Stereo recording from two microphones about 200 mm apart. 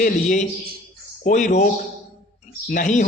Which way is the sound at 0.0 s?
40° left (ahead or behind).